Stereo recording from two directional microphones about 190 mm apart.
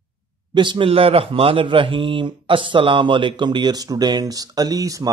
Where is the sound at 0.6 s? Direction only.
25° right (ahead or behind).